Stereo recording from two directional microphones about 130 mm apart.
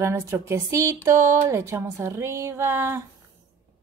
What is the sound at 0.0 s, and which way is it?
Speech, 20° right (ahead or behind).